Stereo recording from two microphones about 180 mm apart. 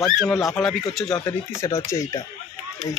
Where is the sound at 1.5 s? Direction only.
15° left (ahead or behind).